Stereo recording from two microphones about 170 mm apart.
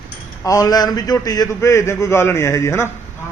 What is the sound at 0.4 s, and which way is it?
A man's voice, 20° left (ahead or behind).